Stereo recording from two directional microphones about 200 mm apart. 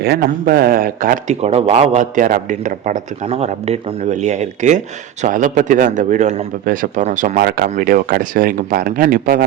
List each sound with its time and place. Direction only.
0.0 s a man's voice: 50° right (ahead or behind)
7.4 s speech: 50° right (ahead or behind)